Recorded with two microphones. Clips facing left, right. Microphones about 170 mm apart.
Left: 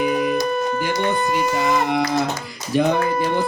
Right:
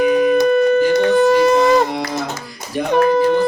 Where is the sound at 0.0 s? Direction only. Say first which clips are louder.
Right 7 dB; 55° right (ahead or behind); by 1.6 s 90° right.